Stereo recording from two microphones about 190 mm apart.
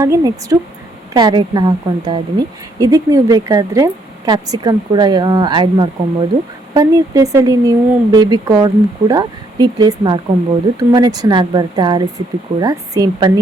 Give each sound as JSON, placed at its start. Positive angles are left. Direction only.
{"t": 0.0, "sound": "a woman's voice", "side_deg": -15}